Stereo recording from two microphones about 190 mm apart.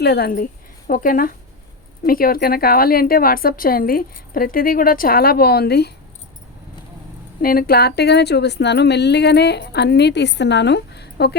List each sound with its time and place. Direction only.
0.0 s a woman's voice: 55° left (ahead or behind)
7.4 s a woman's voice: 55° left (ahead or behind)